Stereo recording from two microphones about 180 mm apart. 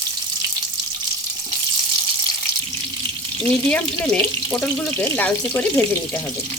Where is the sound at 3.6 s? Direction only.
5° left (ahead or behind).